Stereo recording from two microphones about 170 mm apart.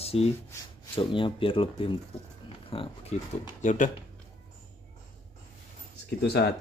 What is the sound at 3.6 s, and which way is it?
Speech, 45° left (ahead or behind).